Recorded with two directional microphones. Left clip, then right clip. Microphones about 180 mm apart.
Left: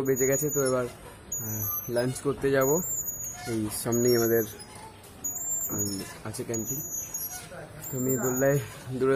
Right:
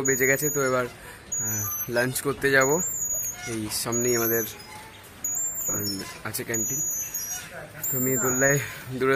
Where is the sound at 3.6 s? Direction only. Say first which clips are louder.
Left 1 dB; 40° left (ahead or behind).